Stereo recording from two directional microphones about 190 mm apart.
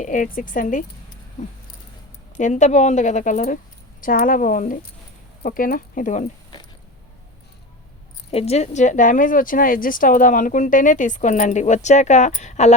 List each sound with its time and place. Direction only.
0.0 s speech: 45° left (ahead or behind)
2.3 s a woman's voice: 40° left (ahead or behind)
8.3 s a woman's voice: 30° left (ahead or behind)